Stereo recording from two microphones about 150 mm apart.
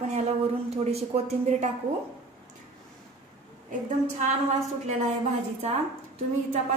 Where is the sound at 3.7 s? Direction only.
55° right (ahead or behind).